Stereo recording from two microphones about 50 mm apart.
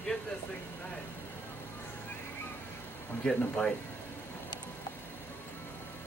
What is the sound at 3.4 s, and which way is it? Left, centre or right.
Speech, centre.